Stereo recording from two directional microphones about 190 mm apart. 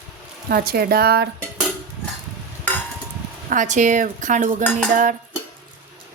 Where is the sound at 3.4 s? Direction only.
40° right (ahead or behind).